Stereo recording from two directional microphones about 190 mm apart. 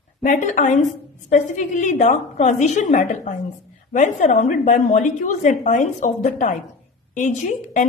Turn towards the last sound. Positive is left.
turn(degrees=40)  # may be behind; listen again after turning